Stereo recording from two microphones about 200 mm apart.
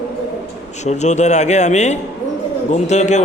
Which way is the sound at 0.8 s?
35° left (ahead or behind).